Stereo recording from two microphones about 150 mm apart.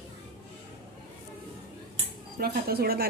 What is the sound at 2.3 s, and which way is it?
Speech, 90° right.